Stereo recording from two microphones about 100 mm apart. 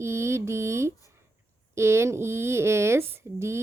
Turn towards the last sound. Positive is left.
turn(degrees=-25)  # may be behind; listen again after turning